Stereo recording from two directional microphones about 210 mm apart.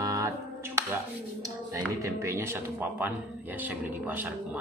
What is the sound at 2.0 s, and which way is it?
Speech, 15° right (ahead or behind).